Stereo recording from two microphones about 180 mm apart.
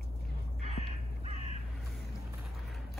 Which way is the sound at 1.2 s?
35° right (ahead or behind).